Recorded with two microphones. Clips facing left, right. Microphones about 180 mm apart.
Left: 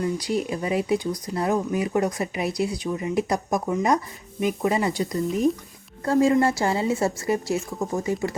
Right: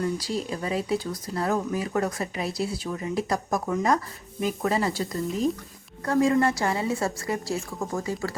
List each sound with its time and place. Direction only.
0.0 s a woman's voice: 20° left (ahead or behind)